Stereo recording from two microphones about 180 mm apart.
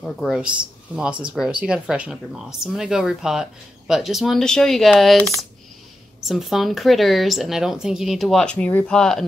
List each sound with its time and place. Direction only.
0.0 s speech: 5° right (ahead or behind)